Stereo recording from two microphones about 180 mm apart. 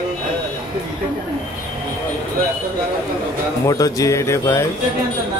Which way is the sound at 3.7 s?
20° left (ahead or behind).